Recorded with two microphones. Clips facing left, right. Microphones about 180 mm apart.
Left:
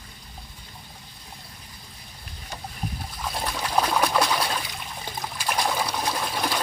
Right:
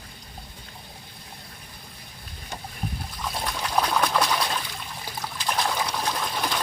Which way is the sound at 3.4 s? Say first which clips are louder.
Left 1 dB; 5° left (ahead or behind).